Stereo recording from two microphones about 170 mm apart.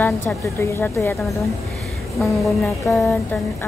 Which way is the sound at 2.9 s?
15° left (ahead or behind).